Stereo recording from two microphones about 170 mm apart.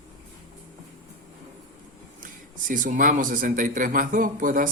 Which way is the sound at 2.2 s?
50° right (ahead or behind).